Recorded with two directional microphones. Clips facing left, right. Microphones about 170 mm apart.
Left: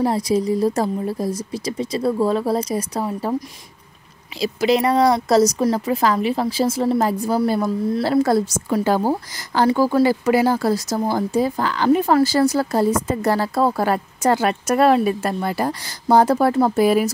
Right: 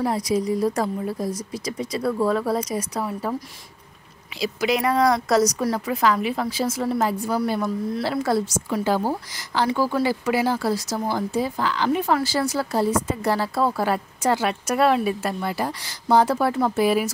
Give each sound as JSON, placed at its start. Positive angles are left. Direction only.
{"t": 0.0, "sound": "a woman's voice", "side_deg": 30}